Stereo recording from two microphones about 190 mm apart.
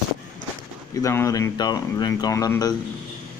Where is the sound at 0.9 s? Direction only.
15° left (ahead or behind).